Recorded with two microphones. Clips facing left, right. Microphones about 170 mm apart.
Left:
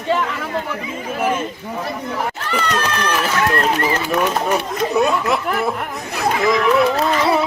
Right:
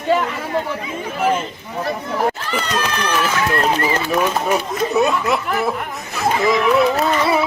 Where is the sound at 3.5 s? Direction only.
Centre (ahead or behind).